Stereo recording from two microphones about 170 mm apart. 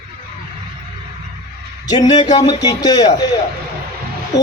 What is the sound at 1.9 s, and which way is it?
Speech, 25° left (ahead or behind).